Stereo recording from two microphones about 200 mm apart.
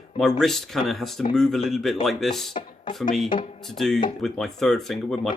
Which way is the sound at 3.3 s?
25° left (ahead or behind).